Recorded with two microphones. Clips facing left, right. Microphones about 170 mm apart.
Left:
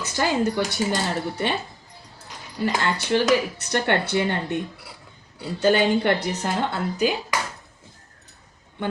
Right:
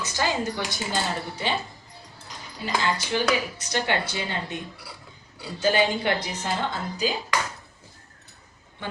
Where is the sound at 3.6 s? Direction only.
60° left (ahead or behind).